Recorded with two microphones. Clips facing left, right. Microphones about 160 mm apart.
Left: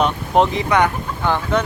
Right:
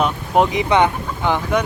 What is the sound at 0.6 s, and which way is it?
Speech, 20° right (ahead or behind).